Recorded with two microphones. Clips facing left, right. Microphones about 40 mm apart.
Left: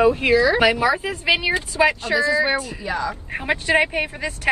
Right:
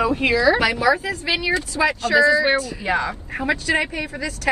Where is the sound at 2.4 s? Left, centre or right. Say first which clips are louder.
Right 2 dB; right.